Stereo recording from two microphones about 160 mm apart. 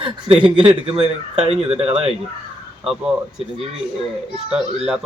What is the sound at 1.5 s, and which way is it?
Speech, 40° right (ahead or behind).